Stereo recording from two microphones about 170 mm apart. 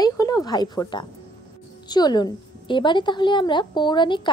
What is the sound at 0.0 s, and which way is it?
Speech, 20° left (ahead or behind).